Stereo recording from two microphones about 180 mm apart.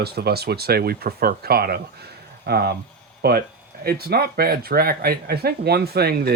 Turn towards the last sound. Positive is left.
turn(degrees=-60)  # may be behind; listen again after turning